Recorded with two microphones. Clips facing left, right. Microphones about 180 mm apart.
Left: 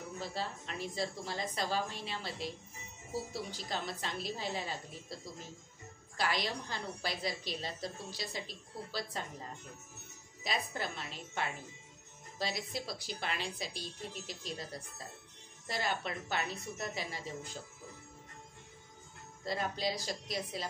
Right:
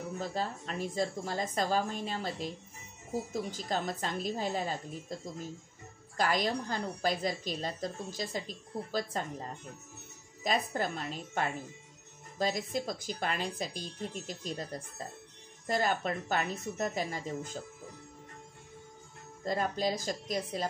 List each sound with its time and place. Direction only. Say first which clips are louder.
0.2 s a woman's voice: right 4 dB; 45° right (ahead or behind)
6.1 s a woman's voice: right 5 dB; 45° right (ahead or behind)
10.4 s a woman's voice: right 6 dB; 45° right (ahead or behind)
19.4 s a woman's voice: right 4 dB; 45° right (ahead or behind)